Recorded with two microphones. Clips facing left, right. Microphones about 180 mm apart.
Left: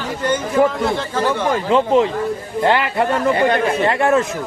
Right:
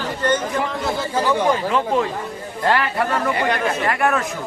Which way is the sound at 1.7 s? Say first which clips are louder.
Left 5 dB; 25° left (ahead or behind).